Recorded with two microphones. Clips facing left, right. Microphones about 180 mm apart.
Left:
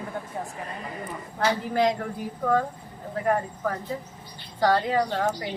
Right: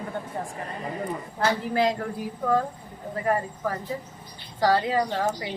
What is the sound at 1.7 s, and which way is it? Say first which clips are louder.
Speech: even; 5° right (ahead or behind).